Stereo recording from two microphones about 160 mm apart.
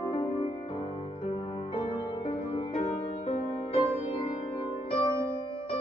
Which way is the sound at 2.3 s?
40° left (ahead or behind).